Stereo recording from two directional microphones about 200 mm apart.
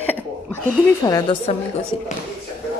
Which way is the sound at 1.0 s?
20° left (ahead or behind).